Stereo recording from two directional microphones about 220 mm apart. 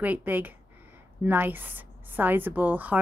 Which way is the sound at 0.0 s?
5° right (ahead or behind).